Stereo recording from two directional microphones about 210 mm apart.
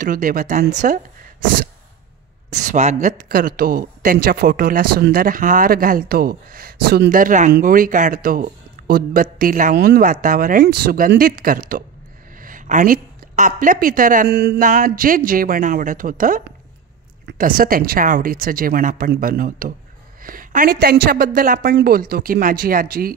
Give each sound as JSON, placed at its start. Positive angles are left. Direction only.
{"t": 0.0, "sound": "a woman's voice", "side_deg": -40}
{"t": 2.5, "sound": "a woman's voice", "side_deg": -35}